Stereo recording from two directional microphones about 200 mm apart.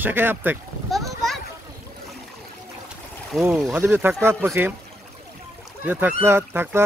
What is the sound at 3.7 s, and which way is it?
Speech, 10° right (ahead or behind).